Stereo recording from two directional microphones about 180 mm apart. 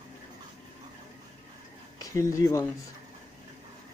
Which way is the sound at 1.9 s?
20° left (ahead or behind).